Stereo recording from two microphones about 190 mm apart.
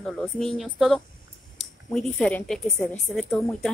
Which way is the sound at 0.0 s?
5° left (ahead or behind).